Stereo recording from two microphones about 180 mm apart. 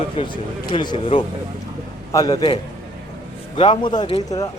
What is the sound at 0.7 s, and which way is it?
Speech, 25° left (ahead or behind).